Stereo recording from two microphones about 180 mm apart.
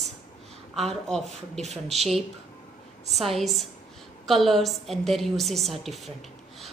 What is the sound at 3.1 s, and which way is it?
A woman's voice, centre (ahead or behind).